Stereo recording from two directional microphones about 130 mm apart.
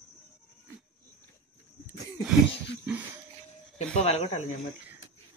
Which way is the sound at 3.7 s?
55° left (ahead or behind).